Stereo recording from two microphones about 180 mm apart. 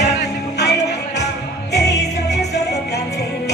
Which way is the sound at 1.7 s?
70° left (ahead or behind).